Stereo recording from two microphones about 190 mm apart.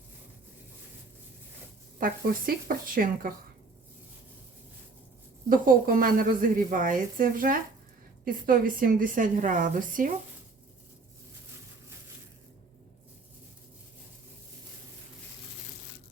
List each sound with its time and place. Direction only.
2.0 s a woman's voice: 50° right (ahead or behind)
5.5 s a woman's voice: 45° right (ahead or behind)